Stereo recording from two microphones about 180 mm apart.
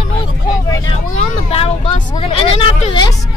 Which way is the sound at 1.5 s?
35° left (ahead or behind).